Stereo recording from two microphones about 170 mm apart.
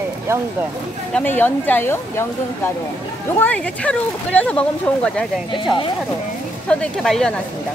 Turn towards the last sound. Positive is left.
turn(degrees=5)  # may be behind; listen again after turning